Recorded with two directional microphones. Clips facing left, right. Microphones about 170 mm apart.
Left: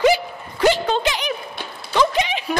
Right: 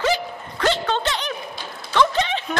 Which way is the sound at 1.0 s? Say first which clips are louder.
Left 3 dB; 10° left (ahead or behind).